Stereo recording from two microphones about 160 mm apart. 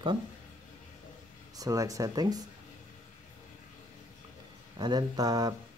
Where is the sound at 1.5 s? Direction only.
20° right (ahead or behind).